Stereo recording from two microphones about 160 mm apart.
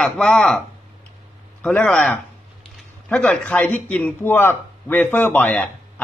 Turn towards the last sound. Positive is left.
turn(degrees=10)  # may be behind; listen again after turning